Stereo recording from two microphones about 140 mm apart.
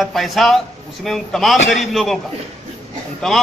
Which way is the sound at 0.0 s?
Centre (ahead or behind).